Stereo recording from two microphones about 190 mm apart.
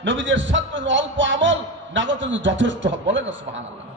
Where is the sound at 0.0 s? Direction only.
75° right (ahead or behind).